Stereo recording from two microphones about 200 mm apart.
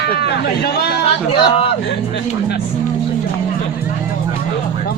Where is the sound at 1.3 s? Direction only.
30° left (ahead or behind).